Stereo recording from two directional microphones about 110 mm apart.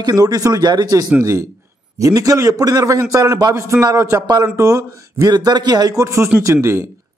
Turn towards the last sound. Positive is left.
turn(degrees=-25)  # may be behind; listen again after turning